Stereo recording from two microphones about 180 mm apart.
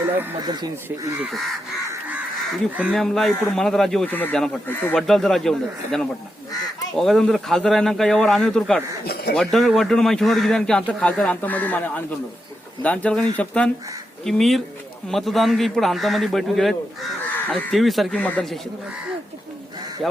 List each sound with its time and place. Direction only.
0.2 s speech: 20° right (ahead or behind)
0.9 s a man's voice: 5° right (ahead or behind)
1.9 s goose: 10° right (ahead or behind)
2.9 s a man's voice: centre (ahead or behind)